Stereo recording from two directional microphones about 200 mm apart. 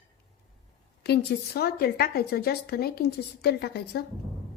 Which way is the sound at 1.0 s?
55° left (ahead or behind).